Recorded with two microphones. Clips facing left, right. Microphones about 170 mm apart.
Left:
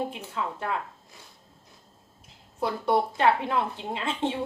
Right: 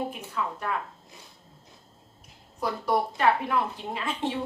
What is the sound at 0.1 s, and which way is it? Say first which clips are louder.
Speech: even; 25° left (ahead or behind).